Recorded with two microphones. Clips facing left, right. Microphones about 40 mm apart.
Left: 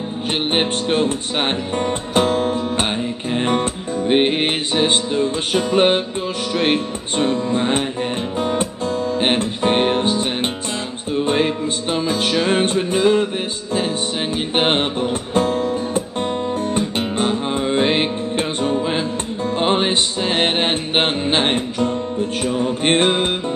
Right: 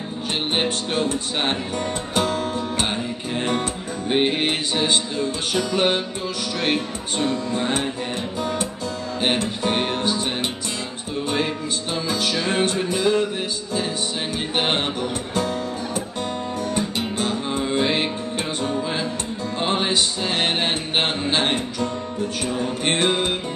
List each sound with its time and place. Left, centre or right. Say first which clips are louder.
0.5 s speech: left 5 dB; left
8.4 s music: left 6 dB; left
14.3 s music: left 5 dB; left
22.4 s speech: left 5 dB; left